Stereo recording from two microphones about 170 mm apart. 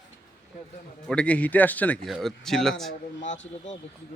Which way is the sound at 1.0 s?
5° left (ahead or behind).